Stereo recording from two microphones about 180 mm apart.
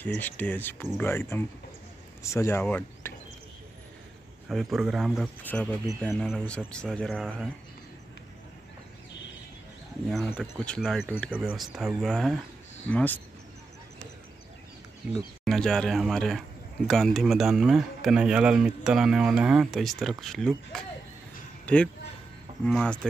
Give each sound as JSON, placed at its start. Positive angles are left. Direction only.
{"t": 0.2, "sound": "speech", "side_deg": 10}
{"t": 4.5, "sound": "speech", "side_deg": 0}
{"t": 5.4, "sound": "speech", "side_deg": 10}
{"t": 10.0, "sound": "speech", "side_deg": 5}
{"t": 11.2, "sound": "speech", "side_deg": -10}
{"t": 15.4, "sound": "speech", "side_deg": 0}